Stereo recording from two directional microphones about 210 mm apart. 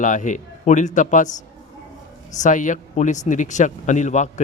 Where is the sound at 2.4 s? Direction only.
35° left (ahead or behind).